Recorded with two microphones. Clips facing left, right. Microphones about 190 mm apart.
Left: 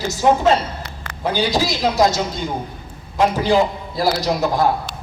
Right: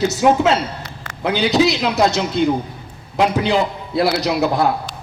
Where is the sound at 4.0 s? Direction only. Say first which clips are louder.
Right 2 dB; 70° right (ahead or behind).